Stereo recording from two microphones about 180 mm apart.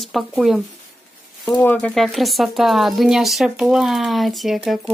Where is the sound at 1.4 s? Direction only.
10° left (ahead or behind).